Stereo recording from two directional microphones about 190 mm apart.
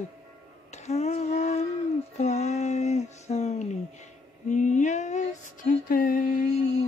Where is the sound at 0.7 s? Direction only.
35° left (ahead or behind).